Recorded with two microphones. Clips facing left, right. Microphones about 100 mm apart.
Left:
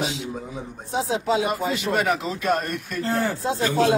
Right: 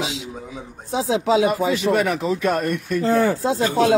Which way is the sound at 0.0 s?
90° right.